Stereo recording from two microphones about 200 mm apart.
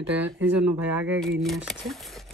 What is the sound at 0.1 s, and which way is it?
Speech, 10° right (ahead or behind).